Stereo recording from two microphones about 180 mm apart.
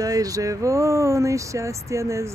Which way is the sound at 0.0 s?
20° right (ahead or behind).